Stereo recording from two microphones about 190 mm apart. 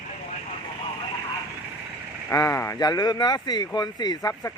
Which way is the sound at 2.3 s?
15° left (ahead or behind).